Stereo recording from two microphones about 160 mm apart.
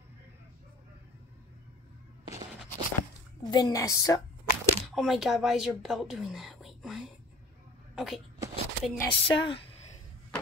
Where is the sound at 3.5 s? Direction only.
20° left (ahead or behind).